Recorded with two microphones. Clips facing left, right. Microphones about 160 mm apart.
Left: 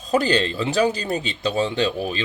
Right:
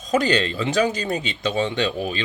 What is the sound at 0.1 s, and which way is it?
Speech, 35° left (ahead or behind).